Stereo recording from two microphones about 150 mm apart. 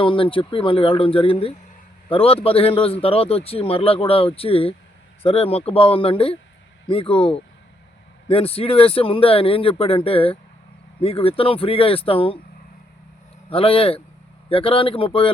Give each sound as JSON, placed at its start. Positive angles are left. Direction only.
{"t": 0.0, "sound": "a man's voice", "side_deg": 35}
{"t": 13.5, "sound": "a man's voice", "side_deg": 40}